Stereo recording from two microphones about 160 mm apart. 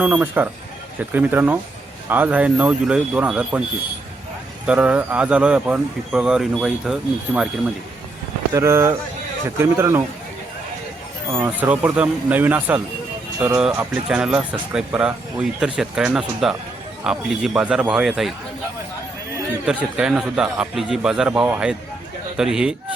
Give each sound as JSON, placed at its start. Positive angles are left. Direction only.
{"t": 0.0, "sound": "speech", "side_deg": -10}
{"t": 4.6, "sound": "speech", "side_deg": -10}
{"t": 8.5, "sound": "speech", "side_deg": -15}
{"t": 11.3, "sound": "speech", "side_deg": -15}
{"t": 19.6, "sound": "speech", "side_deg": -5}